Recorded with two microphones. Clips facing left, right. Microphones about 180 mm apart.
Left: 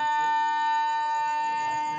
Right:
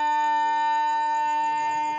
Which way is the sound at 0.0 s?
15° right (ahead or behind).